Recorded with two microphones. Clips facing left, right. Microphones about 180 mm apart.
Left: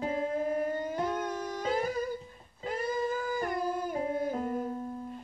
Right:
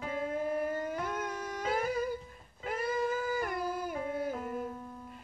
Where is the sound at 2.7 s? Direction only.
5° right (ahead or behind).